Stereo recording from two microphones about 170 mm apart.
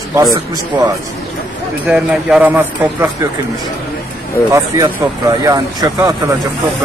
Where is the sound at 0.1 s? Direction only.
20° right (ahead or behind).